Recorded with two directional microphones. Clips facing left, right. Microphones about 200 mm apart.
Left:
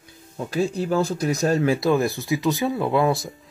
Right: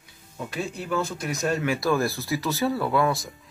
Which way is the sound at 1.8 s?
20° left (ahead or behind).